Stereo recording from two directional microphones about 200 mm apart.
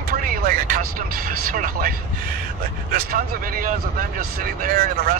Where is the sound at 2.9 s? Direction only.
50° right (ahead or behind).